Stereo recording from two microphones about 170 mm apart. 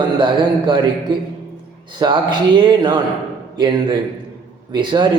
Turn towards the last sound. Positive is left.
turn(degrees=-25)  # may be behind; listen again after turning